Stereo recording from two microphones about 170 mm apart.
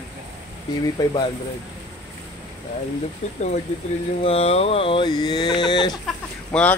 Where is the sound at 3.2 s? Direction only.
40° left (ahead or behind).